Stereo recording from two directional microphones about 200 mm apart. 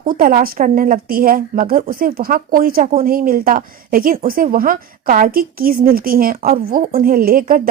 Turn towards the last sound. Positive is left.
turn(degrees=-45)  # may be behind; listen again after turning